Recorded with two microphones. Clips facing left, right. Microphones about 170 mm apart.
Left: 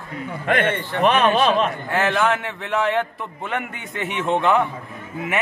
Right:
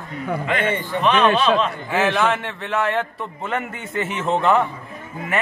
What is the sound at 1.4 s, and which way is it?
Speech, 55° left (ahead or behind).